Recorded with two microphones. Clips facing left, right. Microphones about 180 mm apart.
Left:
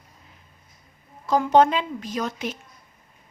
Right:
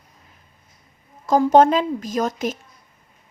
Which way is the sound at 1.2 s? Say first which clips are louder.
Right 4 dB; 45° right (ahead or behind).